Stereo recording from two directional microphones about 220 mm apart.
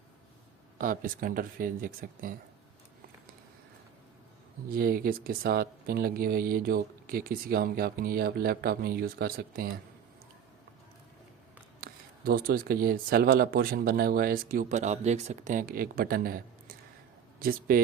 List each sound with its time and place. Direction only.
0.8 s speech: 40° right (ahead or behind)
4.7 s speech: 40° right (ahead or behind)
11.8 s speech: 40° right (ahead or behind)